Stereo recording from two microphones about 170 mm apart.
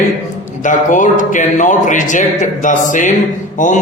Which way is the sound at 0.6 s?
50° left (ahead or behind).